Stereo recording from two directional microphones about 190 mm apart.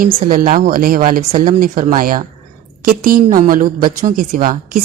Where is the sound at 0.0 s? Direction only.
50° right (ahead or behind).